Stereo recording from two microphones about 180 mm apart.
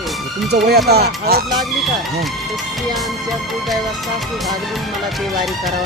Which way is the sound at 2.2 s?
Centre (ahead or behind).